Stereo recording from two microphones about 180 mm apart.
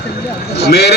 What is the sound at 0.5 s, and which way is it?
Speech, 65° left (ahead or behind).